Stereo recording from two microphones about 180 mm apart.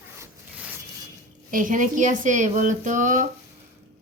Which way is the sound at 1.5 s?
50° right (ahead or behind).